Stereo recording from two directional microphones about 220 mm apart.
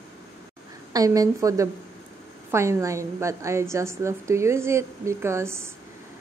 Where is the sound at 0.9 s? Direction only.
15° right (ahead or behind).